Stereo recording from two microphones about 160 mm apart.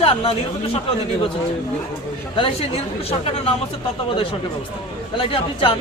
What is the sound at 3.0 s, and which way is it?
Speech, 35° left (ahead or behind).